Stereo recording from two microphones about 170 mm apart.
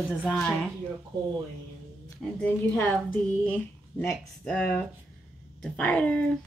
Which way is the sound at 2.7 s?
10° left (ahead or behind).